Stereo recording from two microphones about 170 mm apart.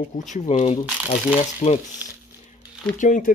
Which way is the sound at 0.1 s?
45° left (ahead or behind).